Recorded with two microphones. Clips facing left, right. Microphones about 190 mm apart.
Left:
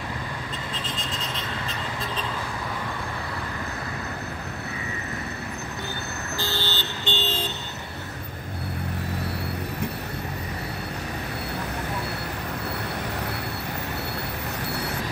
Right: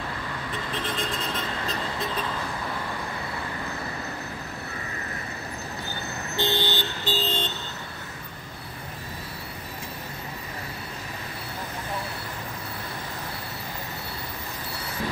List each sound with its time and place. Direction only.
6.3 s vehicle: 20° right (ahead or behind)
7.1 s vehicle: centre (ahead or behind)